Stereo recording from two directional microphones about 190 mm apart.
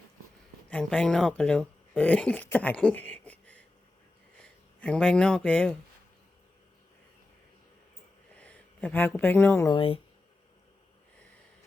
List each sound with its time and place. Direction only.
0.7 s speech: 5° left (ahead or behind)
4.8 s speech: 5° left (ahead or behind)
8.4 s speech: 5° left (ahead or behind)
9.6 s speech: 25° left (ahead or behind)